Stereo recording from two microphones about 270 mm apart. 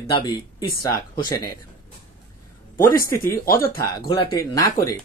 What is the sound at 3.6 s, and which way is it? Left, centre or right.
Speech, centre.